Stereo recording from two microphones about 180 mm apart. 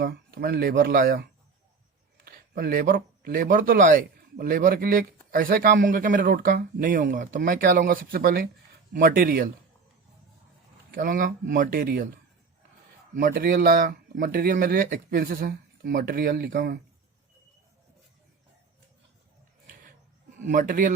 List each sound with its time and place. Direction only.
0.0 s speech: 60° right (ahead or behind)
10.9 s speech: 50° right (ahead or behind)
20.4 s speech: 50° right (ahead or behind)